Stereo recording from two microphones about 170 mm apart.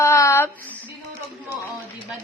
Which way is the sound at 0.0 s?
15° left (ahead or behind).